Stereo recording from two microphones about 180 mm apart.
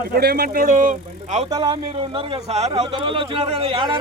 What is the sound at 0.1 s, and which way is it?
Speech, 60° right (ahead or behind).